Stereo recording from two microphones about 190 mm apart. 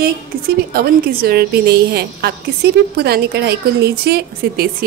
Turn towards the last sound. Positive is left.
turn(degrees=-55)  # may be behind; listen again after turning